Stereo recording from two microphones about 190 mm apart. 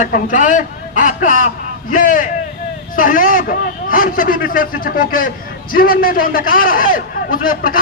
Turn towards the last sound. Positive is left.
turn(degrees=45)  # may be behind; listen again after turning